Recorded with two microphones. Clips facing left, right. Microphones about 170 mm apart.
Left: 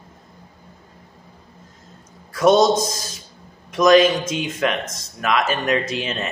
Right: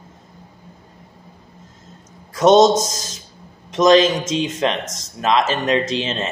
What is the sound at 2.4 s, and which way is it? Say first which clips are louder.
Speech: right 3 dB; 20° right (ahead or behind).